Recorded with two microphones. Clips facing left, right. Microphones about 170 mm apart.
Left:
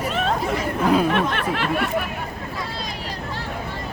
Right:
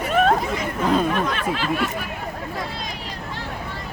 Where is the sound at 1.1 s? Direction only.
65° left (ahead or behind).